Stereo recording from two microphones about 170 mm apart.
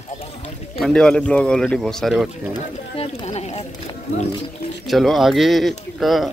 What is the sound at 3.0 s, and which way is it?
Speech, 40° left (ahead or behind).